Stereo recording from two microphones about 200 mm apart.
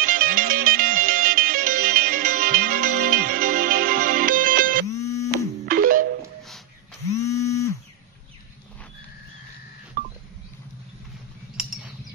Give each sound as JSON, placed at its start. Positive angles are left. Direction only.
{"t": 0.0, "sound": "music", "side_deg": -45}
{"t": 4.9, "sound": "music", "side_deg": 15}
{"t": 5.3, "sound": "music", "side_deg": -45}
{"t": 7.2, "sound": "a sound", "side_deg": 15}
{"t": 10.0, "sound": "telephone dialing", "side_deg": -45}
{"t": 11.5, "sound": "bird", "side_deg": -5}